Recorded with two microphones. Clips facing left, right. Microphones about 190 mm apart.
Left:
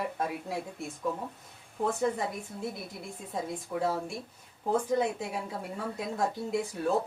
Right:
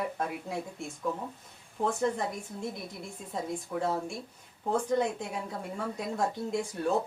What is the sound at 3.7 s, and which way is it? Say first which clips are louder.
Speech: left 2 dB; 5° left (ahead or behind).